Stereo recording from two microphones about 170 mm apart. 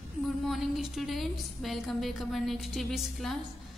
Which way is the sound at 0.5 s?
Centre (ahead or behind).